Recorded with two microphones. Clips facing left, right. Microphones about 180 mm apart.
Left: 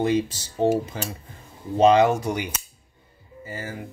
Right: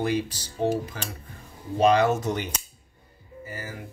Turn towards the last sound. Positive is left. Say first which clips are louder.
# left 3 dB
turn(degrees=25)  # may be behind; listen again after turning